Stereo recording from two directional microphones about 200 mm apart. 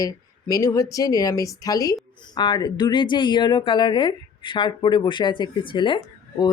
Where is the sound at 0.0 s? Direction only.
15° left (ahead or behind).